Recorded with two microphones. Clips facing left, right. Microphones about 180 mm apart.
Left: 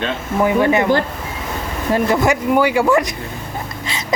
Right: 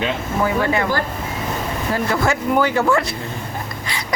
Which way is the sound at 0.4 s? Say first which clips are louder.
Left 5 dB; 20° left (ahead or behind).